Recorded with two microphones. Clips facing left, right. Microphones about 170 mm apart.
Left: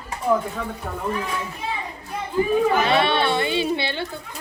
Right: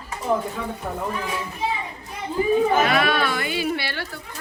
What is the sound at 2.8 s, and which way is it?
Speech, 30° left (ahead or behind).